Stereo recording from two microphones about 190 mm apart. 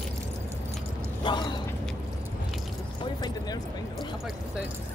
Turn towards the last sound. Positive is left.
turn(degrees=20)  # may be behind; listen again after turning